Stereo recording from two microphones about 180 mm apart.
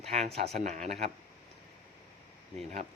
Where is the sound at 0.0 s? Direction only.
35° right (ahead or behind).